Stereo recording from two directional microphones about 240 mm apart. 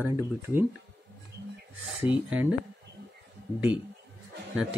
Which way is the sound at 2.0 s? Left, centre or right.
Centre.